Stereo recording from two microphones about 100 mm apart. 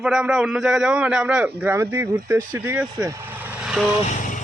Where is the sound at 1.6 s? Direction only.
25° right (ahead or behind).